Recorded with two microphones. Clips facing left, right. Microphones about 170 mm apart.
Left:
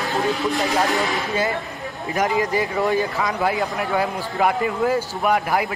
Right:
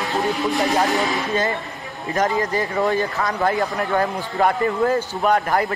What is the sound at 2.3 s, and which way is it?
Speech, 20° left (ahead or behind).